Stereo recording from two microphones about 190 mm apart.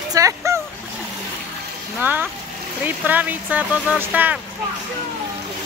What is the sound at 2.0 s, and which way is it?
Speech, 10° right (ahead or behind).